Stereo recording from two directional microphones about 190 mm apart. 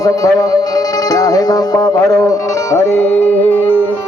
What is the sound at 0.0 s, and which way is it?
Music, 20° left (ahead or behind).